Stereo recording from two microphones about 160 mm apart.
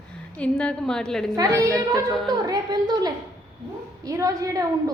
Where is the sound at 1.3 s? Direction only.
20° right (ahead or behind).